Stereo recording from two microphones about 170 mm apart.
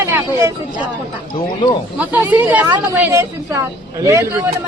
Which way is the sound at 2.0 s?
10° right (ahead or behind).